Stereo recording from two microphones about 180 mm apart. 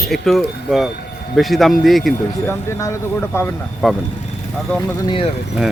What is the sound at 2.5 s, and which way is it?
Speech, 15° left (ahead or behind).